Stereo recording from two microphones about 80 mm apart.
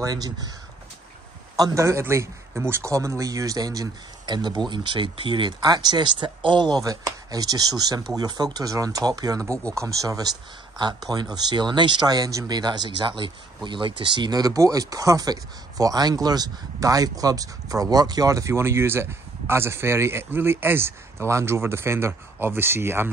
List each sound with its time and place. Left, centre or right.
0.0 s speech: right
1.6 s a man's voice: right
6.8 s speech: right
10.8 s a man's voice: right
12.1 s a man's voice: right
14.4 s speech: right